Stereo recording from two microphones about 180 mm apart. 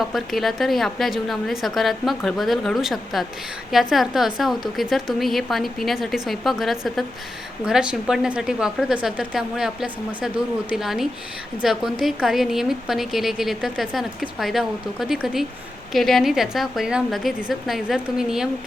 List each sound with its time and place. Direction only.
0.0 s a woman's voice: centre (ahead or behind)